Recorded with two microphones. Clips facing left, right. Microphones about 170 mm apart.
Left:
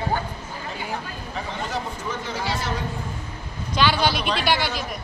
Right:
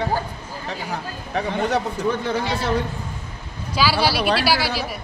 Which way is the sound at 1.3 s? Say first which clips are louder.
Right 8 dB; 65° right (ahead or behind).